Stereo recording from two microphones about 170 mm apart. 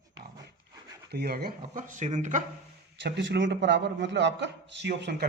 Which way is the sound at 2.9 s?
90° right.